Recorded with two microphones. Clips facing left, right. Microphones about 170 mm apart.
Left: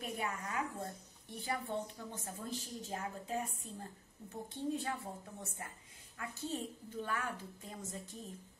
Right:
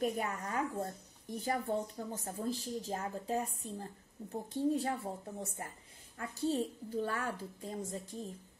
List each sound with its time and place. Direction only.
0.0 s speech: 40° right (ahead or behind)